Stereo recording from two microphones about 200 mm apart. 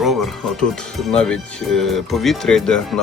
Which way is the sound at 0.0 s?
Centre (ahead or behind).